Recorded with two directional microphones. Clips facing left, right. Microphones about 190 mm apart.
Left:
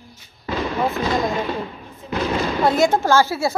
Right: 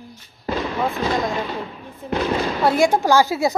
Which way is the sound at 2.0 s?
55° right (ahead or behind).